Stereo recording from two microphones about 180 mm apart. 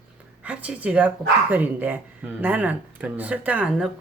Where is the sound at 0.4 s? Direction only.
5° right (ahead or behind).